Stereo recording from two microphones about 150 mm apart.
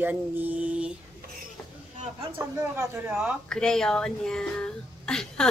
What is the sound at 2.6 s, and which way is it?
Speech, 15° right (ahead or behind).